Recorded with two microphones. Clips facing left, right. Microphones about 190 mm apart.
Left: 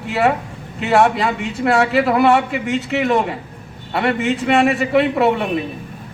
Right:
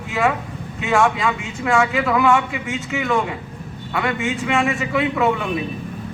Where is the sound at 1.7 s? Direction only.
35° left (ahead or behind).